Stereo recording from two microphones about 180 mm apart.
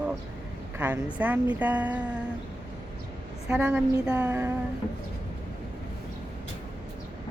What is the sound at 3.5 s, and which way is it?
A woman's voice, 10° right (ahead or behind).